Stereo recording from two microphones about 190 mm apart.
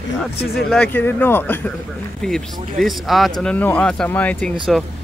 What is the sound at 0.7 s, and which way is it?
Speech, 10° left (ahead or behind).